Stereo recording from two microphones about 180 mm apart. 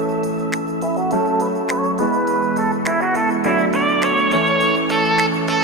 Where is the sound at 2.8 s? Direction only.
Centre (ahead or behind).